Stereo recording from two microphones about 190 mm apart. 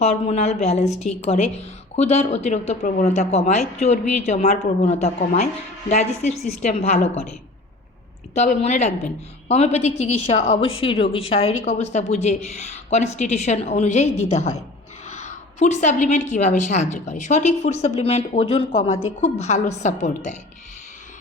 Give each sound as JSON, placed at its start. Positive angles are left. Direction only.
{"t": 0.0, "sound": "a woman's voice", "side_deg": 35}
{"t": 8.4, "sound": "a woman's voice", "side_deg": 40}